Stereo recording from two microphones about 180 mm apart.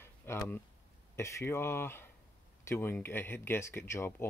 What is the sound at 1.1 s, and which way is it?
Speech, 15° left (ahead or behind).